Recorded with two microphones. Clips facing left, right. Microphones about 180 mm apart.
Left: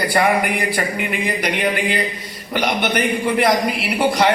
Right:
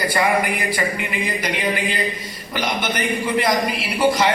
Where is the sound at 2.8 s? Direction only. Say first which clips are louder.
Left 4 dB; 65° left (ahead or behind).